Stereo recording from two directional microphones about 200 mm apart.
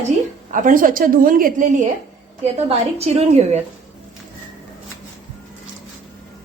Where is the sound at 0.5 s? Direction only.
40° right (ahead or behind).